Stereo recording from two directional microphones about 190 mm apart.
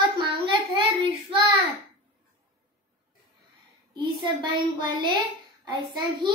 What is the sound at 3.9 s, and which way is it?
A child's voice, 25° right (ahead or behind).